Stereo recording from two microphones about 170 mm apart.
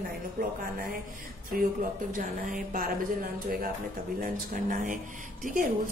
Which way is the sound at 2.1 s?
50° right (ahead or behind).